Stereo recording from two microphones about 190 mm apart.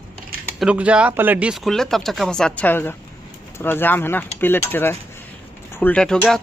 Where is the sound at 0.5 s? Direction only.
5° right (ahead or behind).